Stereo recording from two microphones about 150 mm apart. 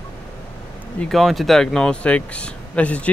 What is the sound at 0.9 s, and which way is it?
Speech, 5° left (ahead or behind).